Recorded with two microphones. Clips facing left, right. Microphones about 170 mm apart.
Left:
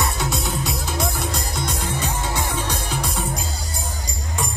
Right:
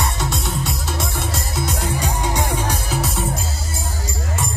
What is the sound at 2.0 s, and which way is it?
Music, 10° right (ahead or behind).